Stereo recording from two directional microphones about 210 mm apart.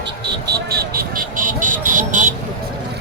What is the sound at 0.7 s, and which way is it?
Vehicle, 45° right (ahead or behind).